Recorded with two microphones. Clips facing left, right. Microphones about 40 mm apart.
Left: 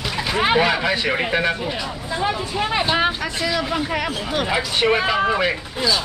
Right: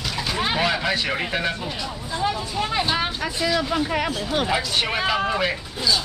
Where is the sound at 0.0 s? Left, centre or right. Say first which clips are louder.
Left 4 dB; centre.